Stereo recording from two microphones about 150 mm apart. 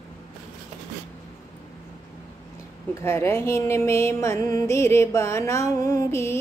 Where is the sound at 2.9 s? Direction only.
15° left (ahead or behind).